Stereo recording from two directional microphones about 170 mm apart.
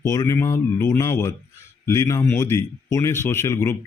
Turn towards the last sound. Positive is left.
turn(degrees=15)  # may be behind; listen again after turning